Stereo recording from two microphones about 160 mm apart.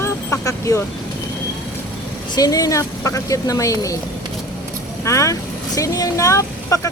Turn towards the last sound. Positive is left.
turn(degrees=20)  # may be behind; listen again after turning